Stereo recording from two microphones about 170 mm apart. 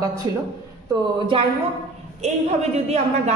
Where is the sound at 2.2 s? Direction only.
40° right (ahead or behind).